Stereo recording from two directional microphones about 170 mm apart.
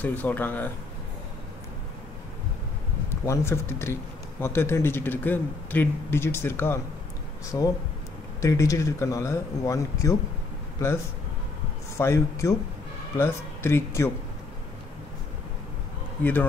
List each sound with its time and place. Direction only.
0.0 s speech: 10° left (ahead or behind)
3.1 s speech: 15° left (ahead or behind)
12.0 s speech: 15° left (ahead or behind)
16.2 s speech: 10° left (ahead or behind)